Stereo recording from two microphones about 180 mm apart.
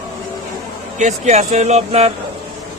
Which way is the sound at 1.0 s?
40° right (ahead or behind).